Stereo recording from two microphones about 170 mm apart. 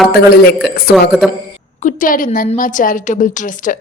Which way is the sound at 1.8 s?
50° left (ahead or behind).